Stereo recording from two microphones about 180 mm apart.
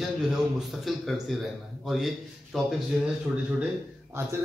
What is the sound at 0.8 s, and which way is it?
Speech, centre (ahead or behind).